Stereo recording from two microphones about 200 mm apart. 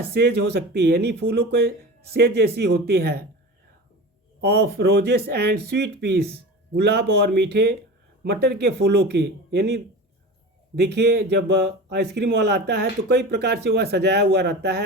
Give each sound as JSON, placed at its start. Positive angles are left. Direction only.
{"t": 0.1, "sound": "speech", "side_deg": -55}
{"t": 4.4, "sound": "speech", "side_deg": -55}